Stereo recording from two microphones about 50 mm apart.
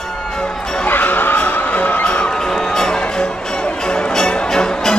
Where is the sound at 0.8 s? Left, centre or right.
Left.